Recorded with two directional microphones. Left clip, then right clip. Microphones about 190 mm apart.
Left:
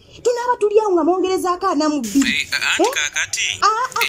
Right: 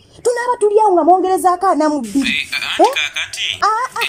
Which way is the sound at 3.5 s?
10° left (ahead or behind).